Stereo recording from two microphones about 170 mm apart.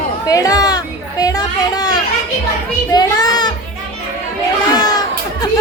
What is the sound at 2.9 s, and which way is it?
Child singing, 25° left (ahead or behind).